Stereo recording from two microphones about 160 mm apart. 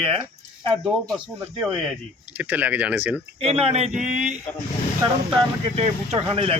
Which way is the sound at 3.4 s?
40° right (ahead or behind).